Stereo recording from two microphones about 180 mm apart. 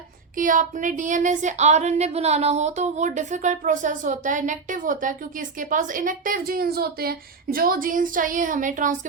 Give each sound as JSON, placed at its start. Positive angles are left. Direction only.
{"t": 0.3, "sound": "speech", "side_deg": -45}